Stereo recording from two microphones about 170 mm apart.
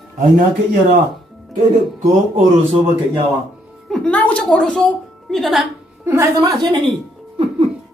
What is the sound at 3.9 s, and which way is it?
A woman's voice, 5° left (ahead or behind).